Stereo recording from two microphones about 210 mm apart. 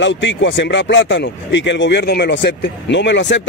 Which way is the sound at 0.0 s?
60° left (ahead or behind).